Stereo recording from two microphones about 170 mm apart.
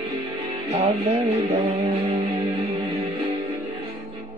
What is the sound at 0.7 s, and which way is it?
Music, 40° right (ahead or behind).